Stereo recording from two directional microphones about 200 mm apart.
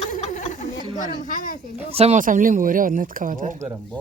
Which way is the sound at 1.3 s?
45° left (ahead or behind).